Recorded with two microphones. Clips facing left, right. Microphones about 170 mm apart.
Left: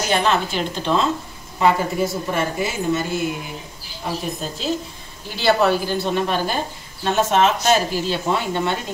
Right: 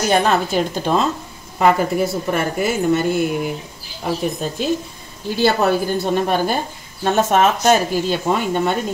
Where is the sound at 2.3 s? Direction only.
55° right (ahead or behind).